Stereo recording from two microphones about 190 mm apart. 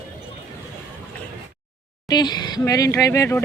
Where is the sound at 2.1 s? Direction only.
20° left (ahead or behind).